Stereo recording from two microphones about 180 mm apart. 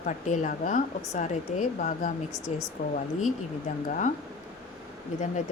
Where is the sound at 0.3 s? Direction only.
45° left (ahead or behind).